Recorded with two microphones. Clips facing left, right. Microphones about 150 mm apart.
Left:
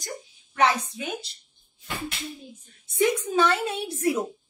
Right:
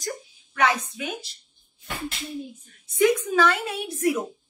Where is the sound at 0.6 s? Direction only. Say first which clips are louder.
Left 1 dB; 30° left (ahead or behind).